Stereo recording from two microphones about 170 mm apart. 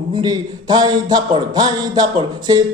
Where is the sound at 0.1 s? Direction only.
25° right (ahead or behind).